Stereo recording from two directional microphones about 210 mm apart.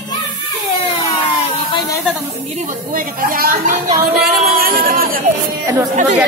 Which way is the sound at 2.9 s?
40° right (ahead or behind).